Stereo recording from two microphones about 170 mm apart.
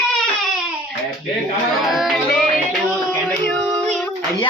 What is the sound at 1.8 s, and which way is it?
Music, centre (ahead or behind).